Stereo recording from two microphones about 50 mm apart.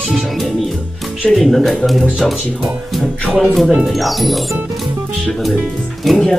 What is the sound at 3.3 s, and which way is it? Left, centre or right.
Speech, right.